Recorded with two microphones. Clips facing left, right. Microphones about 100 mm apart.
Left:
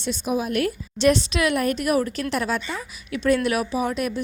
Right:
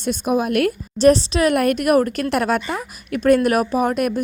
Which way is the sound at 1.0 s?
35° right (ahead or behind).